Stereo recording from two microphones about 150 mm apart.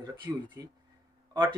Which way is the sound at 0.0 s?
30° right (ahead or behind).